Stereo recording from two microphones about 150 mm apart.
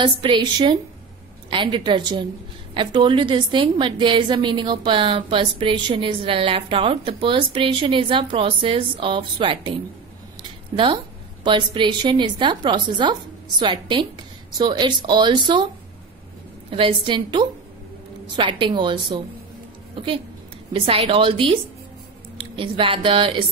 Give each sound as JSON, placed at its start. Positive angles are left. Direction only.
{"t": 0.0, "sound": "a woman's voice", "side_deg": -35}
{"t": 11.4, "sound": "a woman's voice", "side_deg": -30}
{"t": 16.7, "sound": "a woman's voice", "side_deg": -35}
{"t": 20.7, "sound": "a woman's voice", "side_deg": -35}